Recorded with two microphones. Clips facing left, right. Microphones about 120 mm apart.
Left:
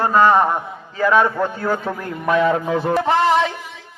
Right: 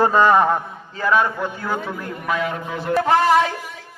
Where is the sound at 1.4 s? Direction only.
40° left (ahead or behind).